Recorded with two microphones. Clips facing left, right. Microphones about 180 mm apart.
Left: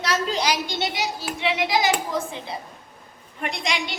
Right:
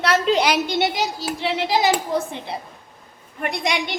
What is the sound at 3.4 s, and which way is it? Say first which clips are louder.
Speech: right 4 dB; 60° right (ahead or behind).